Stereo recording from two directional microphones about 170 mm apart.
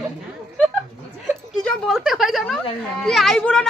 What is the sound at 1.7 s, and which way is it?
A child's voice, centre (ahead or behind).